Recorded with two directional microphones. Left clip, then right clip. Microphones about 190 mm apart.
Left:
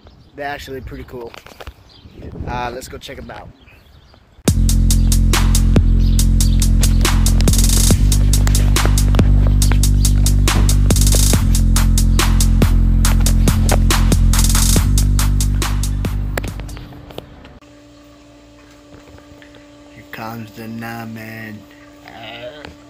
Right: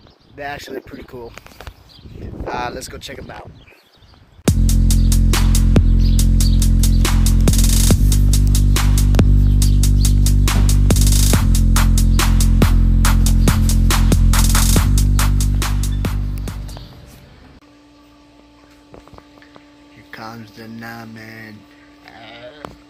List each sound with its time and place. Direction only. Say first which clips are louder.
0.4 s speech: left 2 dB; 15° left (ahead or behind)
2.8 s speech: even; 5° left (ahead or behind)
4.5 s music: left 1 dB; centre (ahead or behind)
20.1 s speech: left 4 dB; 10° left (ahead or behind)
22.0 s sheep: left 5 dB; 10° left (ahead or behind)